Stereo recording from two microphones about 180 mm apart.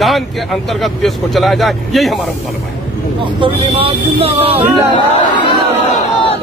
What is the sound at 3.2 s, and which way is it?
Speech, 30° right (ahead or behind).